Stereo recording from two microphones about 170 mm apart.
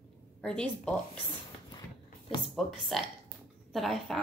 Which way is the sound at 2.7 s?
Centre (ahead or behind).